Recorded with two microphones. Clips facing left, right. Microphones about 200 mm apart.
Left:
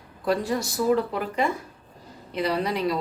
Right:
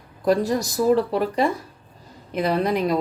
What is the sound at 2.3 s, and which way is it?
Speech, 45° right (ahead or behind).